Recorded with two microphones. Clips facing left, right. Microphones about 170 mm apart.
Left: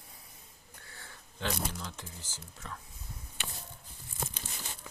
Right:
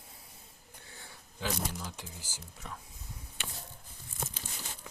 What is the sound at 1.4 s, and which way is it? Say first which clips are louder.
Speech: even; 5° right (ahead or behind).